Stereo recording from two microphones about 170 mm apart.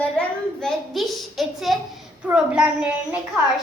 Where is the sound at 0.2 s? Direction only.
Centre (ahead or behind).